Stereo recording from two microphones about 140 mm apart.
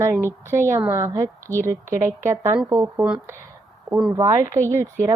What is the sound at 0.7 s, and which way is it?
A woman's voice, 20° right (ahead or behind).